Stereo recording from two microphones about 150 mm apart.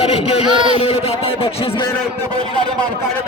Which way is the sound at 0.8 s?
40° left (ahead or behind).